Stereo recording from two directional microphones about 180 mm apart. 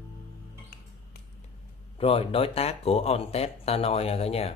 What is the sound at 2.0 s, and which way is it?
Speech, 35° left (ahead or behind).